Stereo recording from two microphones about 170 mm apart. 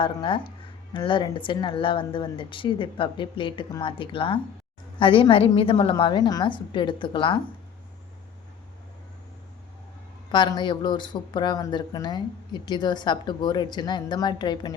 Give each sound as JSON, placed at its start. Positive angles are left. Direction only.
{"t": 0.0, "sound": "speech", "side_deg": 30}
{"t": 10.3, "sound": "speech", "side_deg": 25}